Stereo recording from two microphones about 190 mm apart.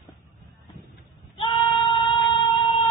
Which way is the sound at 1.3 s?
25° left (ahead or behind).